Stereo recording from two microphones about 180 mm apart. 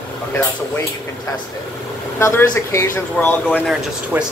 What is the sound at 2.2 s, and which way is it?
Speech, 15° left (ahead or behind).